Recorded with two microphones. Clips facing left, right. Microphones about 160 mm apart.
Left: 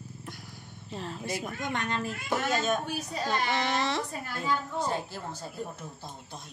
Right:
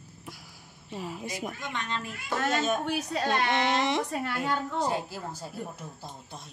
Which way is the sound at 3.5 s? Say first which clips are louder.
Right 3 dB; 20° right (ahead or behind).